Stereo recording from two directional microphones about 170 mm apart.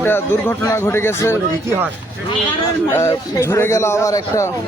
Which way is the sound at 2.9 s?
15° left (ahead or behind).